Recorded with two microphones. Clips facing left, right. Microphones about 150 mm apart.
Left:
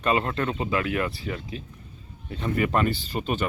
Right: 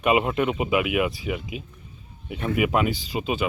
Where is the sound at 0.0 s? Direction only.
10° right (ahead or behind).